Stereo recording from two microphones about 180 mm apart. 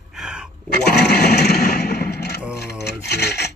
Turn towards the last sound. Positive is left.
turn(degrees=65)  # may be behind; listen again after turning